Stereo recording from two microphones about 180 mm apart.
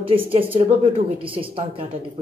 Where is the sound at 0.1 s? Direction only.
30° right (ahead or behind).